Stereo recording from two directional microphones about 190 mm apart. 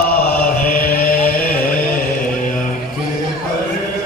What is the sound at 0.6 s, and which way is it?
Chant, 50° left (ahead or behind).